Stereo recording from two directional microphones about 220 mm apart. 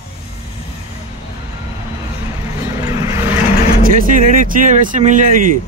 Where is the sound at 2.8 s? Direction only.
15° right (ahead or behind).